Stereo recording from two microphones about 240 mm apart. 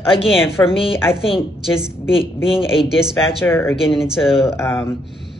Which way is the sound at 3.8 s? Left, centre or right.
Centre.